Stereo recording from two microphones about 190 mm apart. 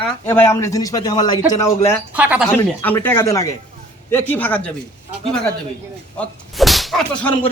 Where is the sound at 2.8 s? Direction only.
10° left (ahead or behind).